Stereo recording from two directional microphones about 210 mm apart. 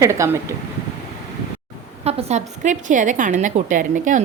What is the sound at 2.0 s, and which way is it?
A woman's voice, 30° right (ahead or behind).